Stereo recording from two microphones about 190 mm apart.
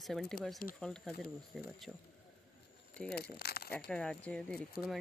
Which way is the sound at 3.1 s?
55° left (ahead or behind).